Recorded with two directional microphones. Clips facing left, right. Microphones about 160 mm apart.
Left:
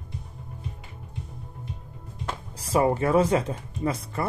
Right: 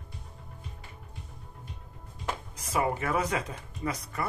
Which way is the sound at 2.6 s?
30° left (ahead or behind).